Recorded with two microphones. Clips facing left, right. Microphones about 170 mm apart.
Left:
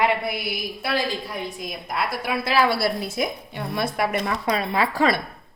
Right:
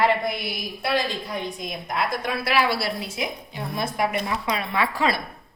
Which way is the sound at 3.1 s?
60° left (ahead or behind).